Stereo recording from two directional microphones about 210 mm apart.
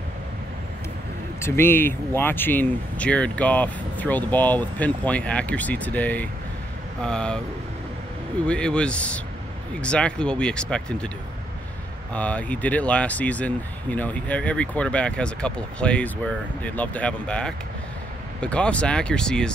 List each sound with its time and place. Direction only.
1.4 s speech: 10° left (ahead or behind)
8.5 s speech: 5° left (ahead or behind)
12.1 s speech: 5° left (ahead or behind)